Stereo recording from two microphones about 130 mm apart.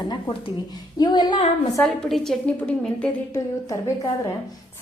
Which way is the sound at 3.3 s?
25° left (ahead or behind).